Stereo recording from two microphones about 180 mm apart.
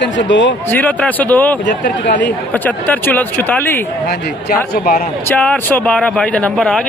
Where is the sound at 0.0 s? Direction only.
85° left.